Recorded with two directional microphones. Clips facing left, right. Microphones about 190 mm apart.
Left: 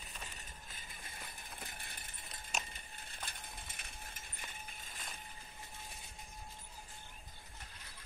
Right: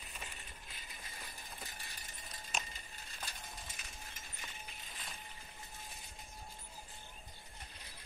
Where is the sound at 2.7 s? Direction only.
55° left (ahead or behind).